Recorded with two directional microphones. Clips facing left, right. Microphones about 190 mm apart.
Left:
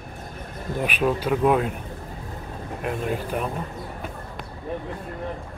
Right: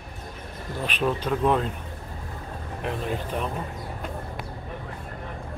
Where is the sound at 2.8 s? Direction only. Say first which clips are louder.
Left 2 dB; 5° left (ahead or behind).